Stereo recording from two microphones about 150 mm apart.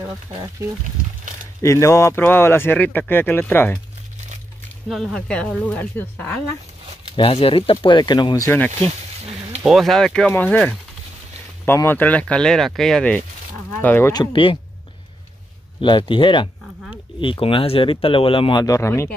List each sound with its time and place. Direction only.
1.6 s speech: 20° left (ahead or behind)
4.8 s speech: centre (ahead or behind)
7.2 s speech: 40° left (ahead or behind)
8.5 s speech: 15° left (ahead or behind)
9.6 s speech: centre (ahead or behind)
14.1 s speech: 35° left (ahead or behind)
15.8 s speech: 35° left (ahead or behind); by 19.1 s 15° left (ahead or behind)